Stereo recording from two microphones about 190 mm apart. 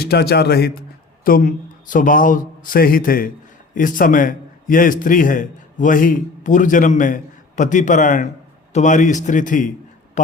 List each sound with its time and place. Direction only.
0.0 s a man's voice: 55° left (ahead or behind)